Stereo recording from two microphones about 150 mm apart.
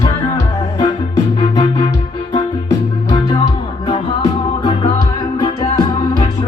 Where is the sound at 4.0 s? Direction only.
40° left (ahead or behind); by 5.7 s 25° left (ahead or behind).